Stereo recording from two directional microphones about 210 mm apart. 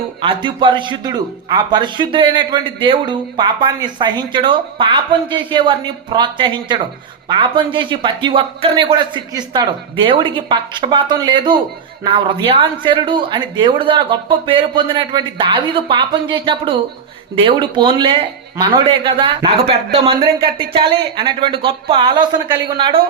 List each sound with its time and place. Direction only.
0.2 s a man's voice: 25° right (ahead or behind)